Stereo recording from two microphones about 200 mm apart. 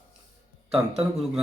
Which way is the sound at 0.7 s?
5° right (ahead or behind).